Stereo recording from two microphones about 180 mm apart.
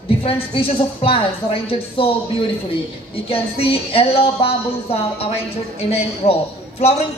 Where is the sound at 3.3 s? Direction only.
30° left (ahead or behind).